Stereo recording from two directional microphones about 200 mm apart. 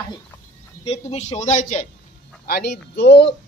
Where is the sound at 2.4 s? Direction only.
50° left (ahead or behind).